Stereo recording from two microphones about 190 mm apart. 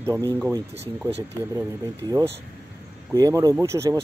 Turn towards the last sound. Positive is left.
turn(degrees=-15)  # may be behind; listen again after turning